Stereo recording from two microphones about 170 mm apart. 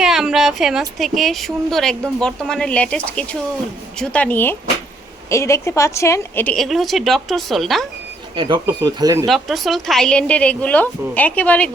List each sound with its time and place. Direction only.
0.0 s a woman's voice: 5° right (ahead or behind)
8.4 s speech: 30° right (ahead or behind)
9.2 s a woman's voice: centre (ahead or behind)